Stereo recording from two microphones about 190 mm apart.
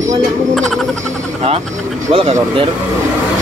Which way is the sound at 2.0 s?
30° right (ahead or behind).